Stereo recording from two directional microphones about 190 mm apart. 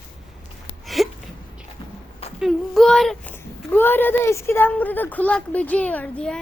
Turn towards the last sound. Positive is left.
turn(degrees=5)  # may be behind; listen again after turning